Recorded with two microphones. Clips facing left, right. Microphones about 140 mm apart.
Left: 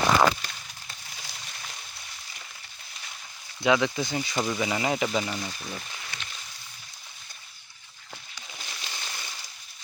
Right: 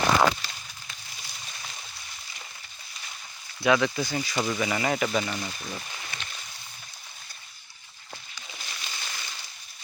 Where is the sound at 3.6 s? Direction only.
15° left (ahead or behind).